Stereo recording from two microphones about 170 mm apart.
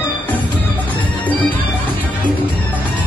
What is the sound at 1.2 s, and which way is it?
Music, 10° left (ahead or behind).